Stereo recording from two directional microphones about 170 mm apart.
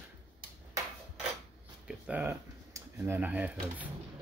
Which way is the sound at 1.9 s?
10° right (ahead or behind).